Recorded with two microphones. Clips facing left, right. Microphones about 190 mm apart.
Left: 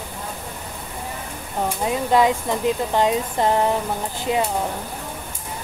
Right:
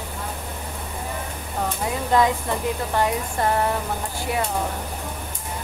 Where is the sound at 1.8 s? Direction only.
20° left (ahead or behind).